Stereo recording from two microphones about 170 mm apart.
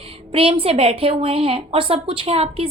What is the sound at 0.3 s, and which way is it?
A woman's voice, 35° right (ahead or behind).